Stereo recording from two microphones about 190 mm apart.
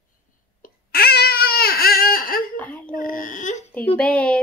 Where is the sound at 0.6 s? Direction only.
55° left (ahead or behind).